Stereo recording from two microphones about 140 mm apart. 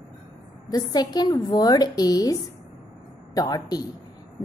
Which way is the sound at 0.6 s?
30° left (ahead or behind).